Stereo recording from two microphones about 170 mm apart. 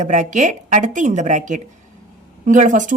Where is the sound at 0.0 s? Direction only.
45° right (ahead or behind).